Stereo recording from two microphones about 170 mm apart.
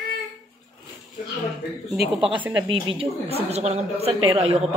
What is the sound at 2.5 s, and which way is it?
A woman's voice, 30° right (ahead or behind).